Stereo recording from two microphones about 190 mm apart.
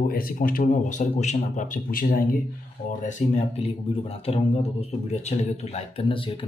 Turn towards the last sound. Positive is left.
turn(degrees=25)  # may be behind; listen again after turning